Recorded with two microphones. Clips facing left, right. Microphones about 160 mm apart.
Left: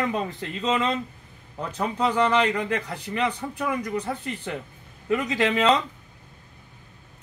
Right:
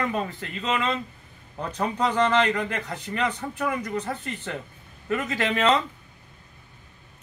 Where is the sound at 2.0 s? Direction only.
10° left (ahead or behind).